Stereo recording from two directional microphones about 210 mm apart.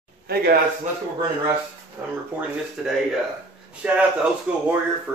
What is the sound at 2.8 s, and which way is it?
Speech, 5° right (ahead or behind).